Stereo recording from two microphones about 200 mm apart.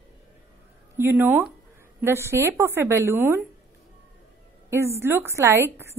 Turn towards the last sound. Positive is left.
turn(degrees=-15)  # may be behind; listen again after turning